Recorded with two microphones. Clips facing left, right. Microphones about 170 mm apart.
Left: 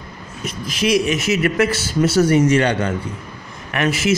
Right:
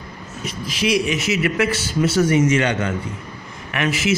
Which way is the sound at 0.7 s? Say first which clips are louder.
Left 2 dB; 50° left (ahead or behind).